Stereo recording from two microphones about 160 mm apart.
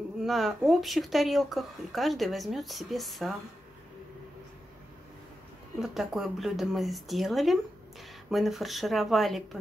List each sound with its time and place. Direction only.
0.2 s speech: centre (ahead or behind)
5.8 s speech: centre (ahead or behind)